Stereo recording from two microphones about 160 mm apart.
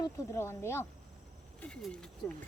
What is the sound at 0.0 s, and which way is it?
Speech, 15° left (ahead or behind).